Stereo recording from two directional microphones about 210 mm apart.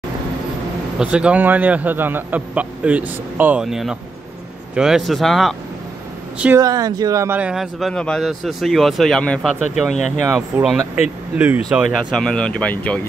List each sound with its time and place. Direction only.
0.9 s a man's voice: 5° right (ahead or behind)
6.6 s speech: 15° right (ahead or behind); by 9.9 s centre (ahead or behind)
9.9 s speech: 35° left (ahead or behind)
10.3 s speech: centre (ahead or behind)